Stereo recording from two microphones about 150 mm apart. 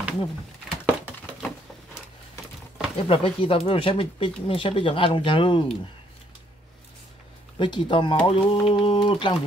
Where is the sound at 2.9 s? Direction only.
40° left (ahead or behind).